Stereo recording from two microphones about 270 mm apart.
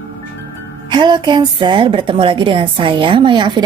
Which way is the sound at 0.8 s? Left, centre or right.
Centre.